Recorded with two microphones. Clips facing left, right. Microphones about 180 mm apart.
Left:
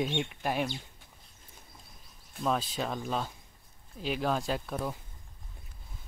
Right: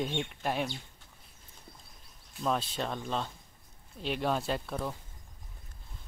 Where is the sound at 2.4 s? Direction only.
Centre (ahead or behind).